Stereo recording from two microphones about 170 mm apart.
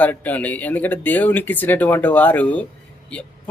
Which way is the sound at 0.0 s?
10° left (ahead or behind).